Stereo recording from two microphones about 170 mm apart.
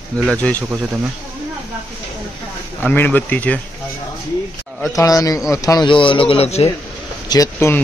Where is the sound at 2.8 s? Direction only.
10° left (ahead or behind).